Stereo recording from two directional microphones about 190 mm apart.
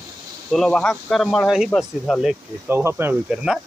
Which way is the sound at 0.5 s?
5° left (ahead or behind).